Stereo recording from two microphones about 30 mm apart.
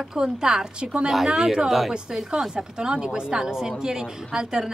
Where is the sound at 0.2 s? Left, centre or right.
Right.